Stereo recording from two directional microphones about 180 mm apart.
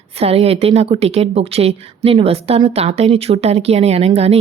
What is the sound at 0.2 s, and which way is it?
A woman's voice, 35° right (ahead or behind).